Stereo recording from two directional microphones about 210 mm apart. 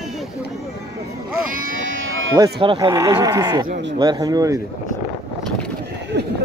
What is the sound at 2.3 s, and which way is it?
Speech, 20° right (ahead or behind).